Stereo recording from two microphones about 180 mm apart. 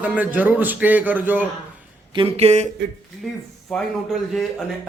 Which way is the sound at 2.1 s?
30° right (ahead or behind).